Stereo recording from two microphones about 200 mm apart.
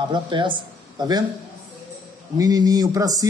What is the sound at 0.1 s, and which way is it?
Speech, 25° right (ahead or behind).